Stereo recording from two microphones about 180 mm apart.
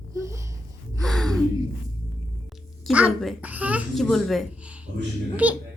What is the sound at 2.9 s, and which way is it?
A woman's voice, centre (ahead or behind).